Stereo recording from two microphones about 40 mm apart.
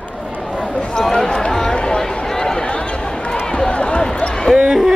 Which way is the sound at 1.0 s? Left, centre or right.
Centre.